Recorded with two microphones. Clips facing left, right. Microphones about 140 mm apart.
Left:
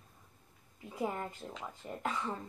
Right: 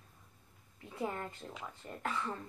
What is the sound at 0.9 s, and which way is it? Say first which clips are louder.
A woman's voice: left 2 dB; 10° left (ahead or behind).